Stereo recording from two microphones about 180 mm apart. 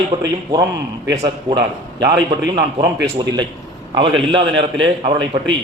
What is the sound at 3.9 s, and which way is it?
A man's voice, 25° right (ahead or behind).